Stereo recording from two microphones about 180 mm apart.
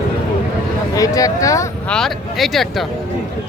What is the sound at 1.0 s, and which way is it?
Speech, 20° left (ahead or behind).